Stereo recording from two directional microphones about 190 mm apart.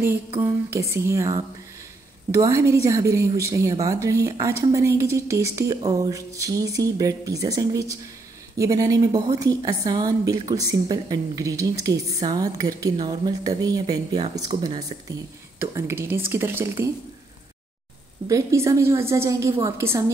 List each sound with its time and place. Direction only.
0.4 s a woman's voice: 15° right (ahead or behind)
15.6 s a woman's voice: 10° right (ahead or behind)
18.2 s a woman's voice: 15° right (ahead or behind)